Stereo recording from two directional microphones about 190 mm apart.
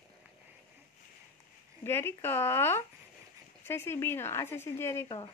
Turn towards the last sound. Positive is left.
turn(degrees=15)  # may be behind; listen again after turning